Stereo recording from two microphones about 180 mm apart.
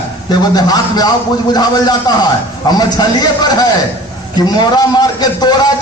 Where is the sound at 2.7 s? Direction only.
20° left (ahead or behind).